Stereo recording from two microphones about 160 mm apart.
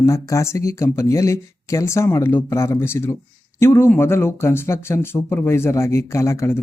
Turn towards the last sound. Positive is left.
turn(degrees=15)  # may be behind; listen again after turning